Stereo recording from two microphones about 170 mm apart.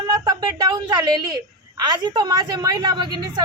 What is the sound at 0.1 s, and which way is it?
A woman's voice, 25° right (ahead or behind).